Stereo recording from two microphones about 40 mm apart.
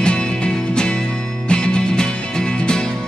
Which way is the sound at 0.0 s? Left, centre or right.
Left.